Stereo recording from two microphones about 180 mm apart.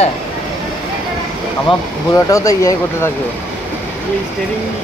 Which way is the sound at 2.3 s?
15° left (ahead or behind).